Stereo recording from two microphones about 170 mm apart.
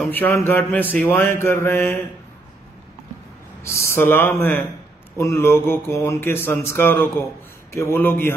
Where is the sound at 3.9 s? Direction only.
10° left (ahead or behind).